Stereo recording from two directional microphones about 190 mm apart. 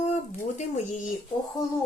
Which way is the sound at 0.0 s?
35° left (ahead or behind).